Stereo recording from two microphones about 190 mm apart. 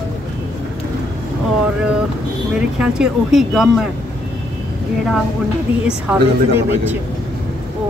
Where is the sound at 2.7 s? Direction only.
5° right (ahead or behind).